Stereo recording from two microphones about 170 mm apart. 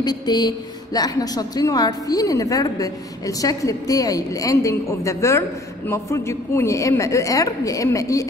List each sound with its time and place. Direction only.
0.0 s a woman's voice: 25° left (ahead or behind)